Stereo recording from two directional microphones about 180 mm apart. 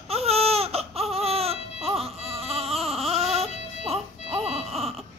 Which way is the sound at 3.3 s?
35° right (ahead or behind).